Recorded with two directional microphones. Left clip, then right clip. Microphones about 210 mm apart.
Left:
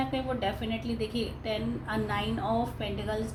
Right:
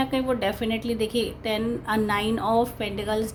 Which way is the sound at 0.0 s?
50° right (ahead or behind).